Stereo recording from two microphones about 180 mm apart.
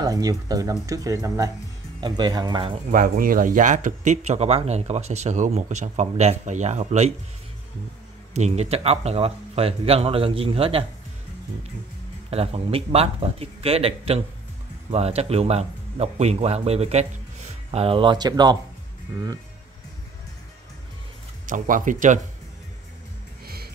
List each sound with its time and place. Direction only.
0.0 s speech: 20° right (ahead or behind)
2.9 s speech: 50° right (ahead or behind)
8.3 s speech: 40° right (ahead or behind)
12.3 s speech: 35° right (ahead or behind)
21.5 s speech: 45° right (ahead or behind)
23.4 s music: 60° right (ahead or behind)